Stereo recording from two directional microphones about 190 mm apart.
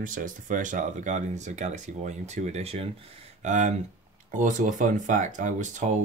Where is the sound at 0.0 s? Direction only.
45° right (ahead or behind).